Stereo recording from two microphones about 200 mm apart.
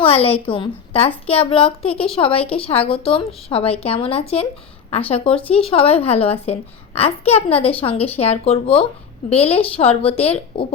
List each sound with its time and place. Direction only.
0.0 s a child's voice: 30° left (ahead or behind)